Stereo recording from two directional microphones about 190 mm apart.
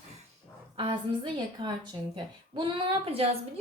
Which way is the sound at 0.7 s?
25° right (ahead or behind).